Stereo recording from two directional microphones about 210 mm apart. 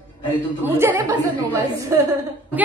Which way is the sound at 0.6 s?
10° right (ahead or behind).